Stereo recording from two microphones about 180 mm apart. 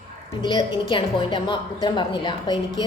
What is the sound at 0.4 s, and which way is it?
A woman's voice, 25° left (ahead or behind).